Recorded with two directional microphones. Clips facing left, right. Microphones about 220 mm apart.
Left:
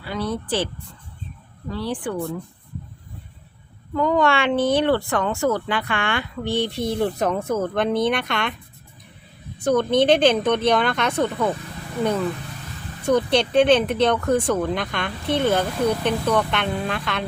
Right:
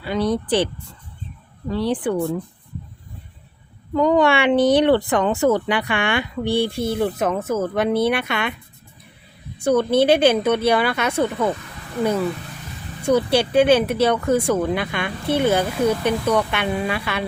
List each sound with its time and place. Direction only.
0.0 s speech: 20° right (ahead or behind)
1.7 s speech: 20° right (ahead or behind)
3.9 s speech: 20° right (ahead or behind)
9.6 s speech: 5° right (ahead or behind)
13.0 s speech: 10° right (ahead or behind)